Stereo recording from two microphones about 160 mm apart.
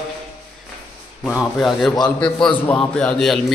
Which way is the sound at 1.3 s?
Centre (ahead or behind).